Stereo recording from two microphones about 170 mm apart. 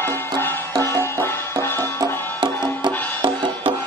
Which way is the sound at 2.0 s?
25° right (ahead or behind).